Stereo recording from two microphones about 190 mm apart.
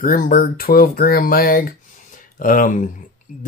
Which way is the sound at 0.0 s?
50° left (ahead or behind).